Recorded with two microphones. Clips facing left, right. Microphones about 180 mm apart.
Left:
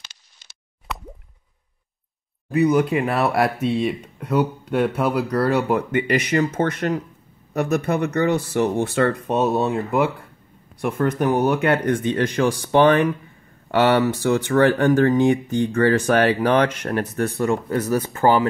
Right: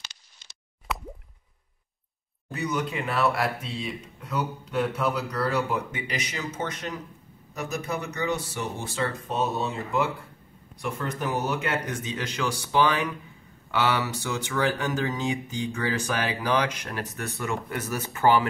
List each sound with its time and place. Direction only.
0.9 s plop: centre (ahead or behind)
2.5 s speech: 60° left (ahead or behind)
17.5 s speech: 35° left (ahead or behind)